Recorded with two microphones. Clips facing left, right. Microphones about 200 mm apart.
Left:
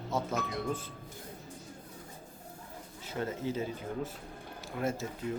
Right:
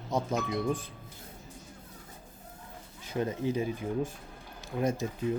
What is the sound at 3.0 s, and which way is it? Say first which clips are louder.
Speech: right 4 dB; 15° right (ahead or behind).